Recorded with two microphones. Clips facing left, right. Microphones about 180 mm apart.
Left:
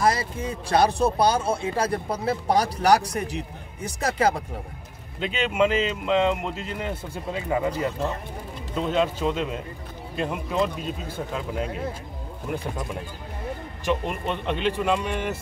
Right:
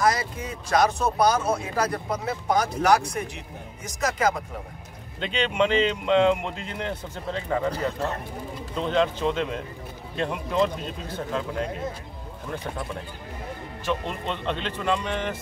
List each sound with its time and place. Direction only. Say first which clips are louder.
0.0 s speech: left 1 dB; 30° left (ahead or behind)
5.2 s speech: left 1 dB; 5° left (ahead or behind)
8.7 s speech: even; 5° left (ahead or behind)
12.4 s a man's voice: left 2 dB; 15° left (ahead or behind)